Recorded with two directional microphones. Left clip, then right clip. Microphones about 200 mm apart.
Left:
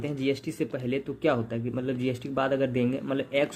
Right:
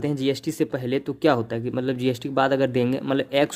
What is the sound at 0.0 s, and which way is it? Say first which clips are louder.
Speech: right 5 dB; 45° right (ahead or behind).